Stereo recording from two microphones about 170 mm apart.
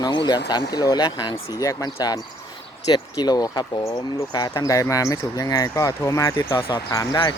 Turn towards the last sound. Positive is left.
turn(degrees=20)  # may be behind; listen again after turning